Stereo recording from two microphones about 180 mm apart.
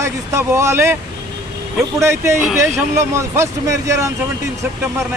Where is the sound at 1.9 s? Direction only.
15° right (ahead or behind).